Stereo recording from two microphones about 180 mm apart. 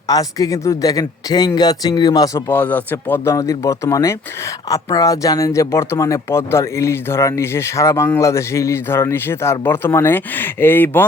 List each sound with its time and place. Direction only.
0.1 s speech: 20° left (ahead or behind)